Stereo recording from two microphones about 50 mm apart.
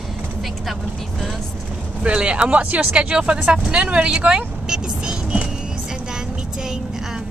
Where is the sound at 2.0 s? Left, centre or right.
Right.